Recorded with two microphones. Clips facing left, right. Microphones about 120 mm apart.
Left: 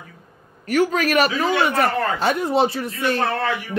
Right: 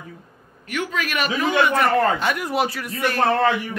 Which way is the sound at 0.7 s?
40° left (ahead or behind).